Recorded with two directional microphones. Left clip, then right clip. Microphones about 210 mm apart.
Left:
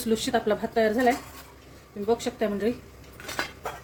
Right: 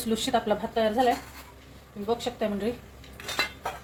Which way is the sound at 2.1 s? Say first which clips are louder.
Left 2 dB; 25° left (ahead or behind).